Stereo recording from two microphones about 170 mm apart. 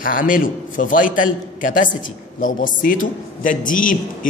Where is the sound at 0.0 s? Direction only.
55° left (ahead or behind).